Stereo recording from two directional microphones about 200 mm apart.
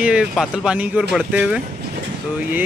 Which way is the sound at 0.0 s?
5° right (ahead or behind).